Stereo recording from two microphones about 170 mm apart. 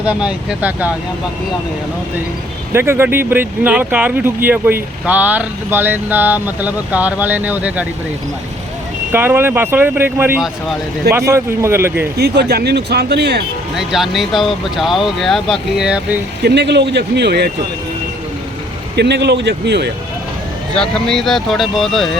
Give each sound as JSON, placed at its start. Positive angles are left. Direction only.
{"t": 0.1, "sound": "speech", "side_deg": -5}
{"t": 2.7, "sound": "speech", "side_deg": -15}
{"t": 9.1, "sound": "speech", "side_deg": -10}
{"t": 12.1, "sound": "speech", "side_deg": -75}
{"t": 13.7, "sound": "speech", "side_deg": 0}
{"t": 16.4, "sound": "speech", "side_deg": -85}
{"t": 18.9, "sound": "speech", "side_deg": -85}
{"t": 20.7, "sound": "speech", "side_deg": 5}